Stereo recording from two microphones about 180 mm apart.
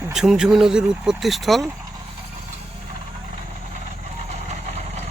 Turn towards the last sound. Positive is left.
turn(degrees=-35)  # may be behind; listen again after turning